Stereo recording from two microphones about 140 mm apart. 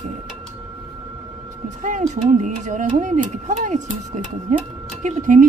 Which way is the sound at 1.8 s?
65° right (ahead or behind).